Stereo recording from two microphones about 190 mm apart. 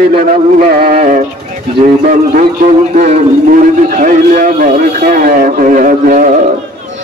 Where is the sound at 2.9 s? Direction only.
45° right (ahead or behind).